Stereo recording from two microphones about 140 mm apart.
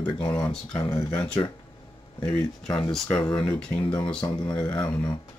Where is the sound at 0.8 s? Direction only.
25° left (ahead or behind).